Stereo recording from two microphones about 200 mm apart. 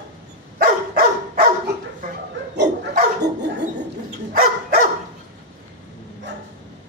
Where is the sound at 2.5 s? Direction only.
60° right (ahead or behind).